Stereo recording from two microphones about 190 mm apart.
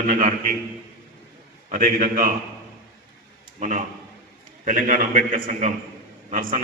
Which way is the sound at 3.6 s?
40° right (ahead or behind).